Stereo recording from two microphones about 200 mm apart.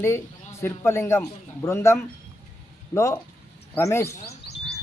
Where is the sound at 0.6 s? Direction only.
15° left (ahead or behind).